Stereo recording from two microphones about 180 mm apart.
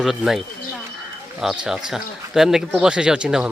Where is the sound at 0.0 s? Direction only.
Centre (ahead or behind).